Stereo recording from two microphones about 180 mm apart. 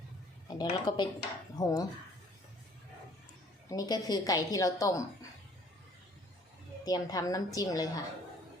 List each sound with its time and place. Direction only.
0.4 s a woman's voice: 25° left (ahead or behind)
3.7 s a woman's voice: 20° left (ahead or behind)
6.8 s a woman's voice: 20° left (ahead or behind)